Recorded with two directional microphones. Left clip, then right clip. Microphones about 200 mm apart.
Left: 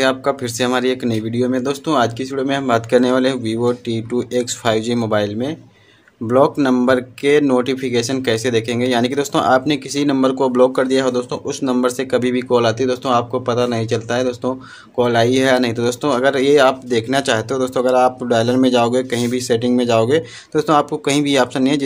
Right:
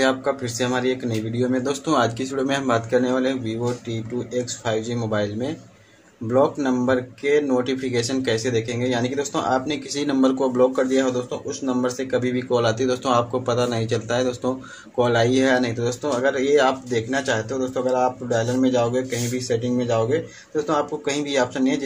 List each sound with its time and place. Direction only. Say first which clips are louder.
0.0 s speech: left 4 dB; 30° left (ahead or behind)
2.9 s speech: left 6 dB; 35° left (ahead or behind)